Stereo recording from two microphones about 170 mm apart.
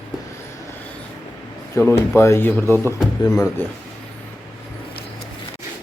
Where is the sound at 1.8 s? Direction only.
15° left (ahead or behind).